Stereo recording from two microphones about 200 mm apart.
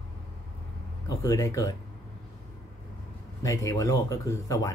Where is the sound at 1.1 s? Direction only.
15° left (ahead or behind).